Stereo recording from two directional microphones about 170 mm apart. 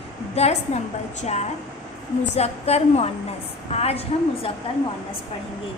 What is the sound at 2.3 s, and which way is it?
A woman's voice, 40° left (ahead or behind).